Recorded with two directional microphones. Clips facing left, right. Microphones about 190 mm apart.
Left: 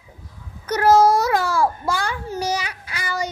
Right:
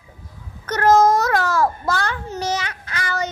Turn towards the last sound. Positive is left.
turn(degrees=10)  # may be behind; listen again after turning